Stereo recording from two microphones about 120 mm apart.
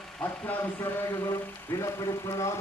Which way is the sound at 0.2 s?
15° left (ahead or behind).